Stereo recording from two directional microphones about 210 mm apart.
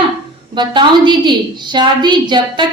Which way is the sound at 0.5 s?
20° right (ahead or behind).